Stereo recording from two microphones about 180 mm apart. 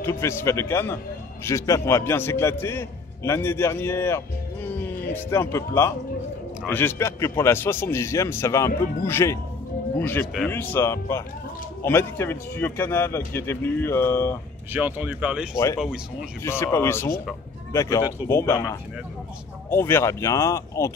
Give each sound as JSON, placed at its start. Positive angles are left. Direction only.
{"t": 0.0, "sound": "a man's voice", "side_deg": 15}
{"t": 14.7, "sound": "speech", "side_deg": -10}
{"t": 15.5, "sound": "a man's voice", "side_deg": 15}
{"t": 15.8, "sound": "speech", "side_deg": -5}
{"t": 16.4, "sound": "a man's voice", "side_deg": 15}